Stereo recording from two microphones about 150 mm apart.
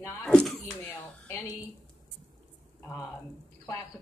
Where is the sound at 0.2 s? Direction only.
5° left (ahead or behind).